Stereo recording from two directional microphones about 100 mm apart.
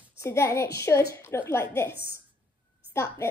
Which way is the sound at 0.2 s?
30° left (ahead or behind).